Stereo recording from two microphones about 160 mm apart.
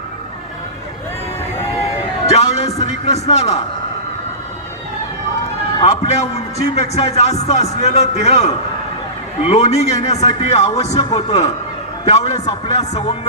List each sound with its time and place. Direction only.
2.2 s a sound: 45° left (ahead or behind)
3.2 s a man's voice: 45° left (ahead or behind)
5.8 s a man's voice: 45° left (ahead or behind)